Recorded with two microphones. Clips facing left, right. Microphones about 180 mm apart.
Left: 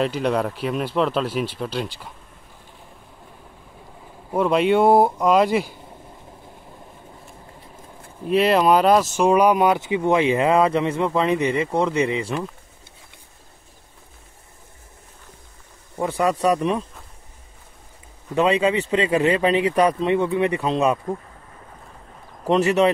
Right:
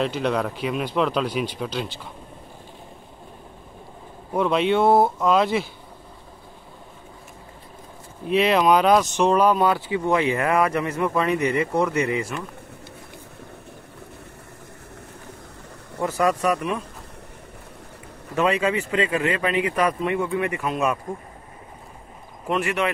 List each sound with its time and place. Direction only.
0.0 s speech: 5° left (ahead or behind)
4.3 s speech: 5° left (ahead or behind)
8.3 s speech: 5° left (ahead or behind); by 12.4 s 25° left (ahead or behind)
16.2 s speech: 30° left (ahead or behind)
18.3 s speech: 20° left (ahead or behind)
22.5 s speech: 30° left (ahead or behind)